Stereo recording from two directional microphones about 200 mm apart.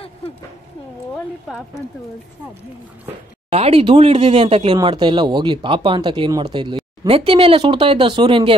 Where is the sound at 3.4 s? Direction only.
30° right (ahead or behind).